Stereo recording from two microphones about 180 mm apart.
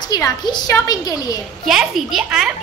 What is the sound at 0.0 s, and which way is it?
Speech, 20° left (ahead or behind).